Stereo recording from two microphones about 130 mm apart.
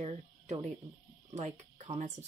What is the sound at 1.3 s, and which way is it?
Speech, 60° right (ahead or behind).